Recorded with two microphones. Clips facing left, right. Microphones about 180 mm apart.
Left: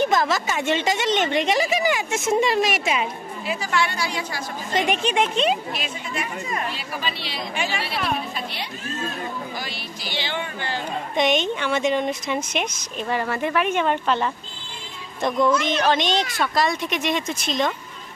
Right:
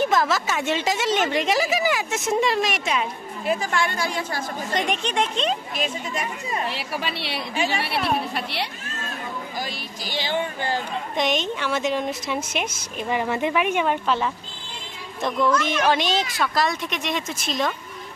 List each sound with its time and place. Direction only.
0.0 s a woman's voice: centre (ahead or behind)
3.4 s a woman's voice: 50° right (ahead or behind)
4.7 s speech: 5° left (ahead or behind)
6.7 s a woman's voice: 65° right (ahead or behind)
9.6 s a sound: 45° right (ahead or behind)
11.1 s a woman's voice: centre (ahead or behind)
15.4 s speech: 15° left (ahead or behind)
15.8 s a woman's voice: 5° right (ahead or behind)